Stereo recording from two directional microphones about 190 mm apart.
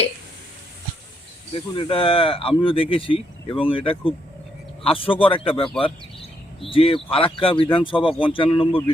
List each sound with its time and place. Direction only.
1.5 s speech: 30° left (ahead or behind)